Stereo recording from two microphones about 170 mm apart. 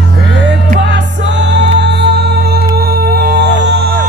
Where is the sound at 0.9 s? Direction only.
90° right.